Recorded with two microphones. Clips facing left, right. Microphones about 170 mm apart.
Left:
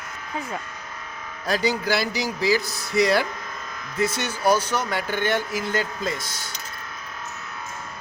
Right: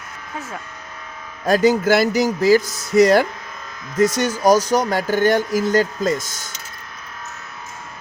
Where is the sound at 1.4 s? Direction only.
45° right (ahead or behind).